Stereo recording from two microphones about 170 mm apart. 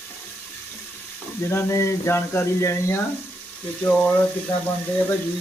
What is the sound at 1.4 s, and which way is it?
Speech, 15° left (ahead or behind).